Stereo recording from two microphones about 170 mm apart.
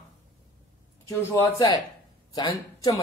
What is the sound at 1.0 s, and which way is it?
Speech, 15° left (ahead or behind).